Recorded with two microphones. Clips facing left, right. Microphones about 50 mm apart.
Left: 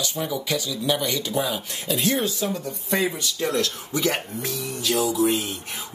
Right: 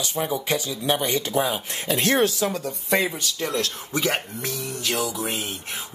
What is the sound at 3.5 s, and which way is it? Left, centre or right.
Speech, right.